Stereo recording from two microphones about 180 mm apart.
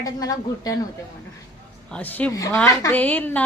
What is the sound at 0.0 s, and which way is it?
Speech, 20° left (ahead or behind).